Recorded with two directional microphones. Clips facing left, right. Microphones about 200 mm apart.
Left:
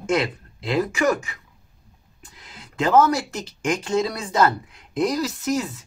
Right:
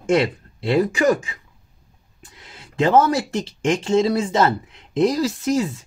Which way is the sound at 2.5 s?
30° right (ahead or behind).